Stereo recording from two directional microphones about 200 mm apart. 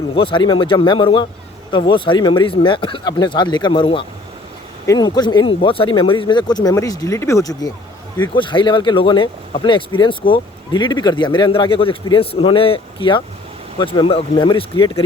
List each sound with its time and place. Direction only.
0.2 s speech: 25° left (ahead or behind)